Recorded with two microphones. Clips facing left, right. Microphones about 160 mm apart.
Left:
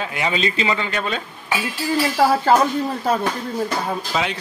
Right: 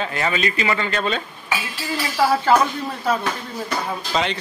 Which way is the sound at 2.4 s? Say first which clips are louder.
Left 2 dB; 40° left (ahead or behind).